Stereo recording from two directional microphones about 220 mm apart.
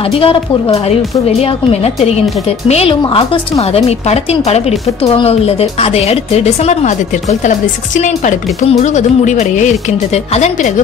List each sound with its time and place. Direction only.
0.0 s speech: 25° left (ahead or behind)